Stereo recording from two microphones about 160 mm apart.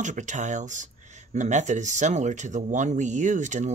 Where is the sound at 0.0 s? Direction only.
50° right (ahead or behind).